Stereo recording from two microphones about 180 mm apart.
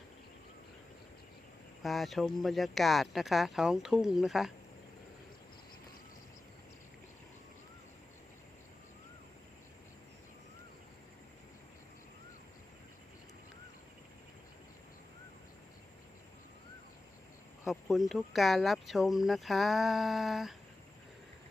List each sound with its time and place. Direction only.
1.8 s speech: centre (ahead or behind)
17.7 s speech: centre (ahead or behind)